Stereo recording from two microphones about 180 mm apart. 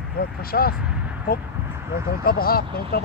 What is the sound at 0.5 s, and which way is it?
Speech, 55° left (ahead or behind).